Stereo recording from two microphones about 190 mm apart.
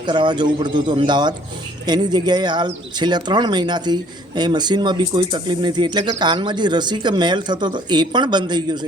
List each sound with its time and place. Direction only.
0.0 s speech: 25° right (ahead or behind)